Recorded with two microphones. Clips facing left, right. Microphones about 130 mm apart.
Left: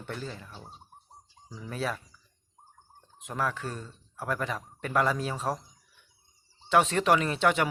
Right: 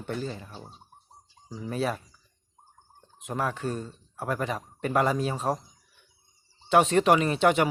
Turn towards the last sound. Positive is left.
turn(degrees=-15)  # may be behind; listen again after turning